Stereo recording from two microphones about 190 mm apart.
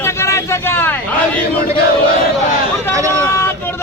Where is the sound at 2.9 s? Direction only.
15° right (ahead or behind).